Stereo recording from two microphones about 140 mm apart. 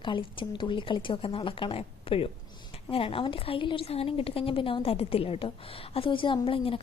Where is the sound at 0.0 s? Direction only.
35° left (ahead or behind).